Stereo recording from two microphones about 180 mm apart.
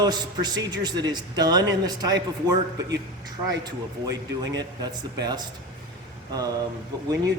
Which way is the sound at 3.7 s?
20° right (ahead or behind).